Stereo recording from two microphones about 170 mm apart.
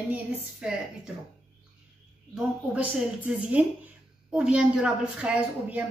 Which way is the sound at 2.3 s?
5° right (ahead or behind).